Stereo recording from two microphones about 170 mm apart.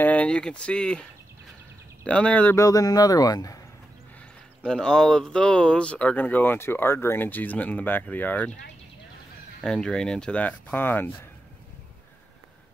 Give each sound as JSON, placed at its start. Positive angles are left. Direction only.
{"t": 0.0, "sound": "speech", "side_deg": 10}
{"t": 2.0, "sound": "speech", "side_deg": 5}
{"t": 4.6, "sound": "speech", "side_deg": 5}
{"t": 9.6, "sound": "speech", "side_deg": 5}